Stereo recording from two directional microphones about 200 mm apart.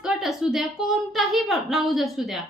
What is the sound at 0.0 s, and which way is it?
A child's voice, centre (ahead or behind).